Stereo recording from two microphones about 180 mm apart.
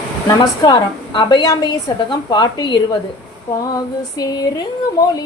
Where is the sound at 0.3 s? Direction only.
25° left (ahead or behind).